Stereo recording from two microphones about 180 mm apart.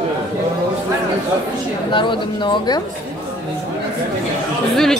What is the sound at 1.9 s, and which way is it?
Speech, 25° left (ahead or behind).